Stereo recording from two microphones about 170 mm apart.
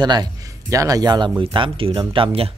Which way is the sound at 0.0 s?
25° right (ahead or behind).